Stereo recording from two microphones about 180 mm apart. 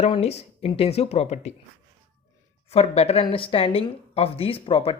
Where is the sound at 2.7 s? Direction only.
35° left (ahead or behind).